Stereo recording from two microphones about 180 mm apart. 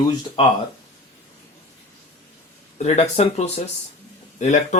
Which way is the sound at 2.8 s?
40° left (ahead or behind).